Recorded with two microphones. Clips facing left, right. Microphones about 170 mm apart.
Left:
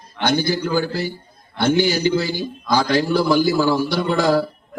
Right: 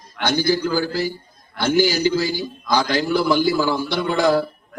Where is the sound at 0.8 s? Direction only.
25° left (ahead or behind).